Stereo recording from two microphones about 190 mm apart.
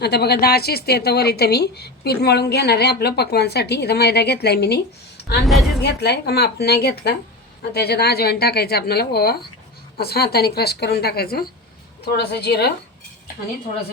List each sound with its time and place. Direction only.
0.0 s speech: 60° left (ahead or behind)
5.5 s a woman's voice: centre (ahead or behind)
5.8 s speech: 60° left (ahead or behind)